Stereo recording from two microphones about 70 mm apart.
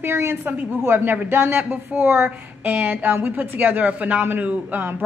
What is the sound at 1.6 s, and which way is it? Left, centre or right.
A man's voice, centre.